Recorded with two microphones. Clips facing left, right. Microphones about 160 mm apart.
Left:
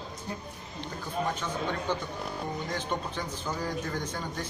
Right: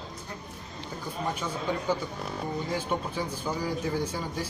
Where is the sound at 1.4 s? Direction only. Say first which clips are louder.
Right 1 dB; 10° right (ahead or behind).